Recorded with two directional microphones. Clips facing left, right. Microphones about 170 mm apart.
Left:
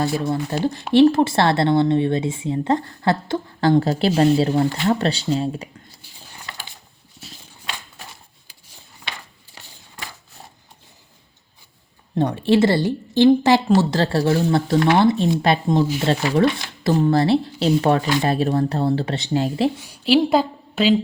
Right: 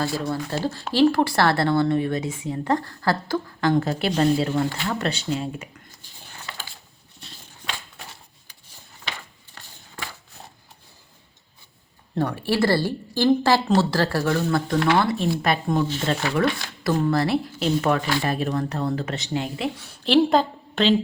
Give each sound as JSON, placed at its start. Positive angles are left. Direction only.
{"t": 0.0, "sound": "speech", "side_deg": 20}
{"t": 7.2, "sound": "walk", "side_deg": 5}
{"t": 12.1, "sound": "speech", "side_deg": 20}
{"t": 19.8, "sound": "a woman's voice", "side_deg": 10}